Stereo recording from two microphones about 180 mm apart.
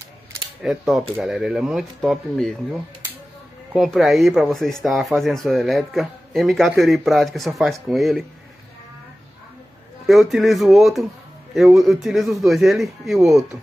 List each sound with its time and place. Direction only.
0.6 s speech: centre (ahead or behind)
10.0 s speech: centre (ahead or behind)